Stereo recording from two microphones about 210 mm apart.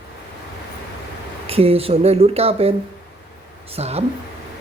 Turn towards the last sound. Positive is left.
turn(degrees=-30)  # may be behind; listen again after turning